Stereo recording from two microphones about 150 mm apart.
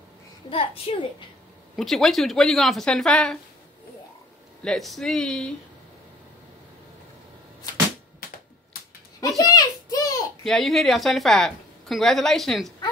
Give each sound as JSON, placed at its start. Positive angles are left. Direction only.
{"t": 0.5, "sound": "a woman's voice", "side_deg": 35}
{"t": 1.8, "sound": "a woman's voice", "side_deg": 0}
{"t": 4.6, "sound": "a woman's voice", "side_deg": 0}
{"t": 9.4, "sound": "a sound", "side_deg": 25}
{"t": 10.4, "sound": "a woman's voice", "side_deg": 0}